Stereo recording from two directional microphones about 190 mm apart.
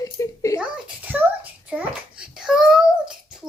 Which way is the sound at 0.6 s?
10° right (ahead or behind).